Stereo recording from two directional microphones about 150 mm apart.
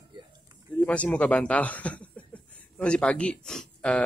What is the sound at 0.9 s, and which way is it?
Speech, 10° left (ahead or behind).